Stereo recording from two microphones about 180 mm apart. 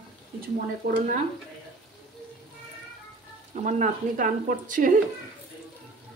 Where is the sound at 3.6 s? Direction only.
45° right (ahead or behind).